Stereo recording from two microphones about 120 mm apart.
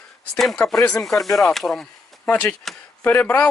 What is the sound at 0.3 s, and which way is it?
Speech, 5° left (ahead or behind).